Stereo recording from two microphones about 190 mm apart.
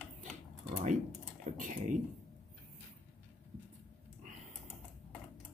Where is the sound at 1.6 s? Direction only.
45° right (ahead or behind).